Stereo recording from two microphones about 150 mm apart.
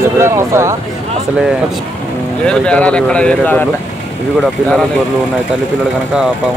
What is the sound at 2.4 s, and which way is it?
Speech, 5° left (ahead or behind).